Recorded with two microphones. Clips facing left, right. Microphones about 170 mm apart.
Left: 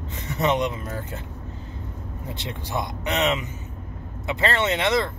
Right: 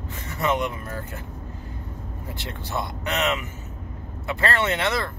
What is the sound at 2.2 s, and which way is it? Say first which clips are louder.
Speech: left 2 dB; 20° left (ahead or behind).